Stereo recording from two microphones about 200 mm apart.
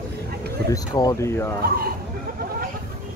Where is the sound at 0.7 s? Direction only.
20° left (ahead or behind).